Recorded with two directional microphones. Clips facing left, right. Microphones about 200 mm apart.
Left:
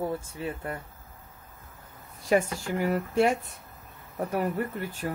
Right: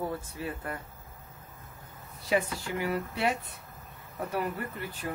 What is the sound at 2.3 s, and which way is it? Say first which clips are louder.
Speech: left 4 dB; 45° left (ahead or behind).